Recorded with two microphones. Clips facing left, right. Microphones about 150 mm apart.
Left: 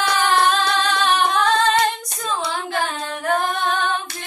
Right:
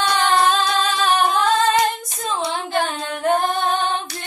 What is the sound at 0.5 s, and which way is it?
Singing, centre (ahead or behind).